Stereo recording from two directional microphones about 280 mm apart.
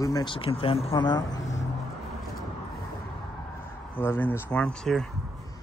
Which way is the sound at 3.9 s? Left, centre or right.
Centre.